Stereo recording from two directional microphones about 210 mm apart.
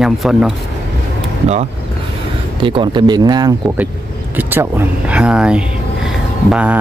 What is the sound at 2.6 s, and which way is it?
A man's voice, 25° right (ahead or behind).